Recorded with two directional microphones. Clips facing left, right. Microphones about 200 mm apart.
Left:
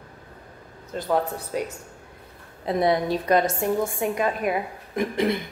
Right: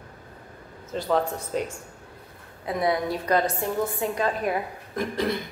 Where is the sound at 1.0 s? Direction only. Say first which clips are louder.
Even; 5° left (ahead or behind).